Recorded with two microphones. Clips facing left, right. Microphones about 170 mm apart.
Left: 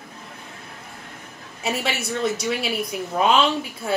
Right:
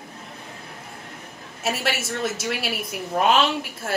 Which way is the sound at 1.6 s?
Centre (ahead or behind).